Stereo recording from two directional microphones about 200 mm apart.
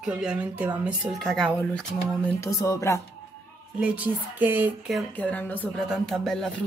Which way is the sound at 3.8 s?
5° right (ahead or behind).